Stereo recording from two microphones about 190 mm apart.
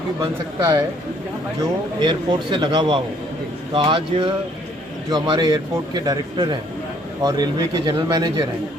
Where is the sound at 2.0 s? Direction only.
25° right (ahead or behind).